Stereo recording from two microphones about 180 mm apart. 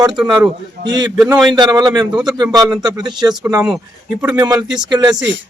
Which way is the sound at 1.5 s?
20° right (ahead or behind).